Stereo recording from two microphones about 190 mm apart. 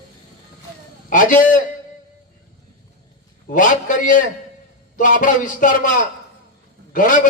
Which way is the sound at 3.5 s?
45° left (ahead or behind).